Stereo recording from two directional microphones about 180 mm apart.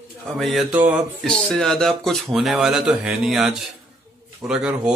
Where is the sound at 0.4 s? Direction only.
Centre (ahead or behind).